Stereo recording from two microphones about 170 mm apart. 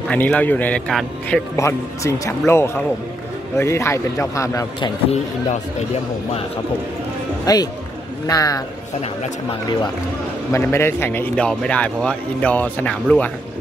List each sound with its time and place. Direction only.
0.1 s a man's voice: 10° left (ahead or behind)
1.6 s a man's voice: 15° left (ahead or behind)
7.5 s a man's voice: 20° left (ahead or behind)
10.5 s a man's voice: 15° left (ahead or behind)